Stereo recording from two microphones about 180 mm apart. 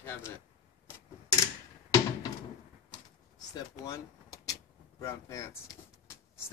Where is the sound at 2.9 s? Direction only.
20° left (ahead or behind).